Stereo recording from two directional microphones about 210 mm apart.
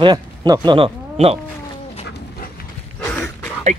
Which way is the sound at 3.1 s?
10° left (ahead or behind).